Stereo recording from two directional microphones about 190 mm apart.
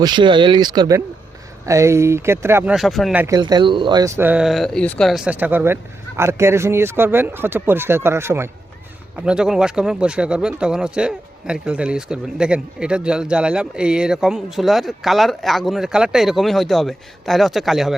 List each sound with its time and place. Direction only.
0.0 s speech: 25° right (ahead or behind)
2.7 s speech: centre (ahead or behind)